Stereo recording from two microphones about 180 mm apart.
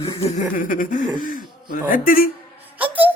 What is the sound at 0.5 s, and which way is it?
Speech, 50° left (ahead or behind).